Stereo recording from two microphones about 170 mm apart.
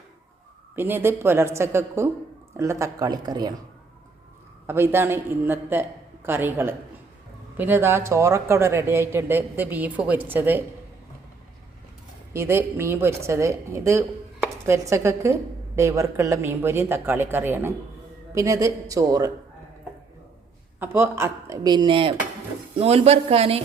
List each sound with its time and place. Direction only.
0.8 s speech: 10° right (ahead or behind)
4.6 s speech: 15° right (ahead or behind)
12.3 s speech: 15° right (ahead or behind)
20.7 s speech: 10° right (ahead or behind); by 23.6 s 35° right (ahead or behind)